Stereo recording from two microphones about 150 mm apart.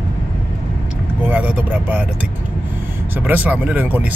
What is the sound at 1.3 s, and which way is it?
Speech, 10° right (ahead or behind).